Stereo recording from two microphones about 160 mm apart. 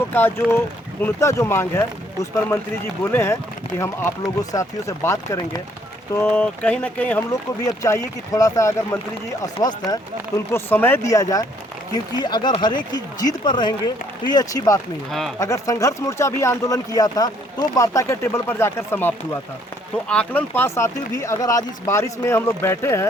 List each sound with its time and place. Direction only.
0.1 s speech: 15° left (ahead or behind)
3.0 s speech: 15° left (ahead or behind)
4.5 s speech: 20° left (ahead or behind)
6.1 s speech: 10° left (ahead or behind)